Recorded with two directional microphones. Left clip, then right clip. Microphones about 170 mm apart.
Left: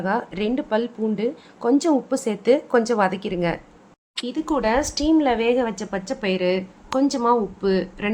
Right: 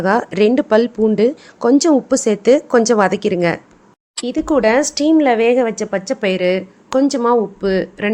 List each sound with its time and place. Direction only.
0.0 s a woman's voice: 40° right (ahead or behind)